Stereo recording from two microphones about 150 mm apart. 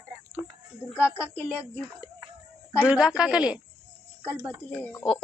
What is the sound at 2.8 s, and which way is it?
Speech, 10° right (ahead or behind).